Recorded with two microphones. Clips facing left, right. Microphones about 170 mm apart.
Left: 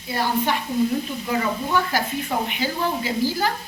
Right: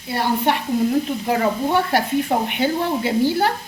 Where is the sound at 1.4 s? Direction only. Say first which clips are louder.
Right 4 dB; 35° right (ahead or behind).